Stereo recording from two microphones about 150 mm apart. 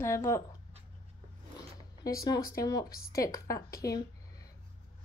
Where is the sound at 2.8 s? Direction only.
80° left.